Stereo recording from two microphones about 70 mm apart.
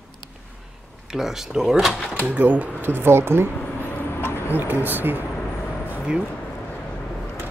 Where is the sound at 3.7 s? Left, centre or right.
Left.